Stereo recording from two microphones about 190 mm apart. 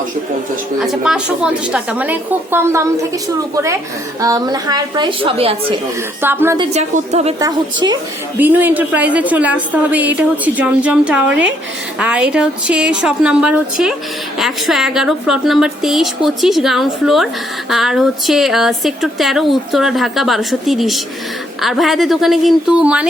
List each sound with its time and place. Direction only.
0.8 s a woman's voice: 5° right (ahead or behind); by 5.7 s 30° right (ahead or behind)
6.2 s a woman's voice: 10° right (ahead or behind)
6.7 s a woman's voice: 35° right (ahead or behind)
7.3 s a woman's voice: 20° right (ahead or behind)
8.4 s a woman's voice: 10° right (ahead or behind)